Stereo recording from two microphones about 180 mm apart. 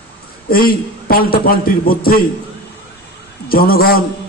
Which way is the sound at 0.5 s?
55° left (ahead or behind).